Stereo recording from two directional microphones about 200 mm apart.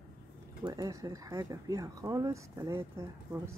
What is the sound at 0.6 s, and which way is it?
Speech, 15° right (ahead or behind).